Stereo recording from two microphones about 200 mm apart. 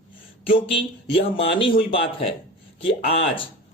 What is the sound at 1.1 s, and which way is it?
Speech, 25° left (ahead or behind).